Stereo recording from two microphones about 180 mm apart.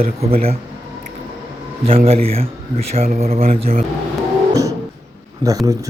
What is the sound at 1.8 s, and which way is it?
Speech, 30° right (ahead or behind).